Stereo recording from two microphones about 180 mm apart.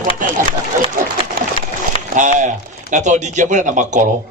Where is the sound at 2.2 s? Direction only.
45° right (ahead or behind).